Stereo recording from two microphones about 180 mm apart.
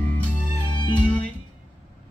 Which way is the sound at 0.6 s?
25° left (ahead or behind).